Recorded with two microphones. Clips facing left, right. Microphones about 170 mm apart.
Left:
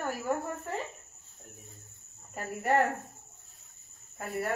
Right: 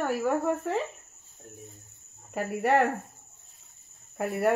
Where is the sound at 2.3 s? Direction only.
80° right.